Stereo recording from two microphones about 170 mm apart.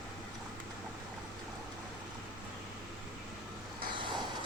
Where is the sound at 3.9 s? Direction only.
25° right (ahead or behind).